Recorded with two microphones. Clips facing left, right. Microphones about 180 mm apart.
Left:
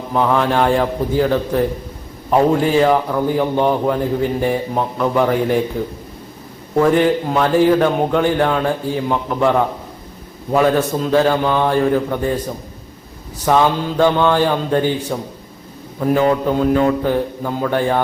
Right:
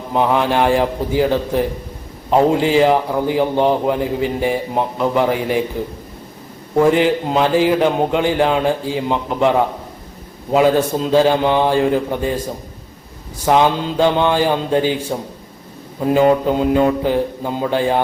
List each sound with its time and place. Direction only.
0.1 s a man's voice: 15° right (ahead or behind)
2.3 s a man's voice: 20° right (ahead or behind)
6.7 s a man's voice: 10° right (ahead or behind)
13.4 s a man's voice: 15° right (ahead or behind)